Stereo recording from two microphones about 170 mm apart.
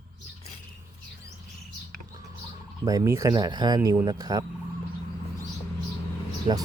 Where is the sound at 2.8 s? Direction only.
20° right (ahead or behind).